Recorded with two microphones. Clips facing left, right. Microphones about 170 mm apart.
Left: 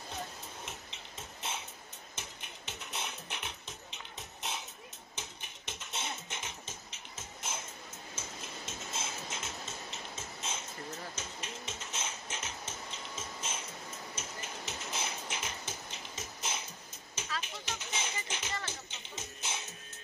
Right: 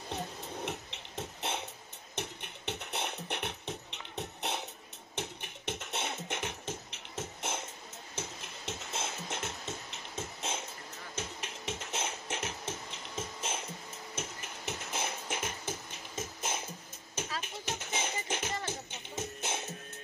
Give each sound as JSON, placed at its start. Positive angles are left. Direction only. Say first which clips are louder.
{"t": 0.7, "sound": "music", "louder": "right 7 dB", "side_deg": -70}
{"t": 14.1, "sound": "music", "louder": "right 5 dB", "side_deg": -60}